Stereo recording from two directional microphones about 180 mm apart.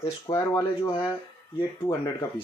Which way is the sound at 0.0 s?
15° left (ahead or behind).